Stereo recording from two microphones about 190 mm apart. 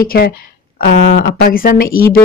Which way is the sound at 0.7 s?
60° left (ahead or behind).